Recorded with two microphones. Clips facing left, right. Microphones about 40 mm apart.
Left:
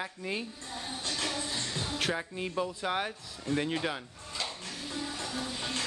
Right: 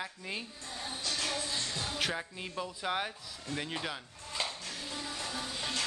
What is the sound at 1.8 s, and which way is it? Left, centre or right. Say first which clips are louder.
Speech: left 4 dB; centre.